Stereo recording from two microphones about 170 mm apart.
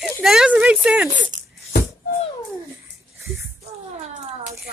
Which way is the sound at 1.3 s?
50° right (ahead or behind).